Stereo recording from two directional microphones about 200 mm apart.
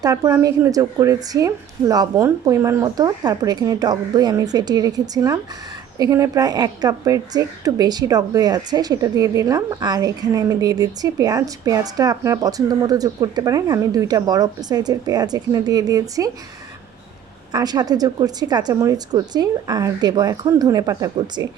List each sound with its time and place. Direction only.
0.0 s a woman's voice: 15° right (ahead or behind)
17.5 s a woman's voice: 20° right (ahead or behind)